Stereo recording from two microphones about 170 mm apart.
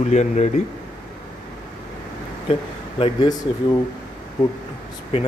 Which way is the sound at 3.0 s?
25° left (ahead or behind).